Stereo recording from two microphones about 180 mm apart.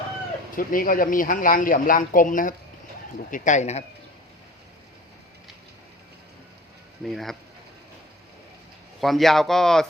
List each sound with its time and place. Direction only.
0.5 s speech: 50° left (ahead or behind)
7.0 s speech: centre (ahead or behind)
9.0 s speech: centre (ahead or behind)